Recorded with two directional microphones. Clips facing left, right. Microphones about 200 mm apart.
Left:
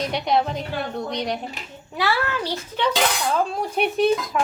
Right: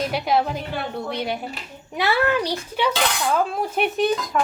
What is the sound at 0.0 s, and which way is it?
A woman's voice, 5° right (ahead or behind).